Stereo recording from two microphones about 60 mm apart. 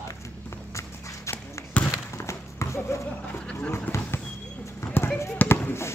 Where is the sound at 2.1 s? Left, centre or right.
Left.